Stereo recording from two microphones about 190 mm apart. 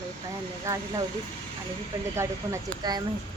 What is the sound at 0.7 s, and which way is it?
Speech, 15° right (ahead or behind).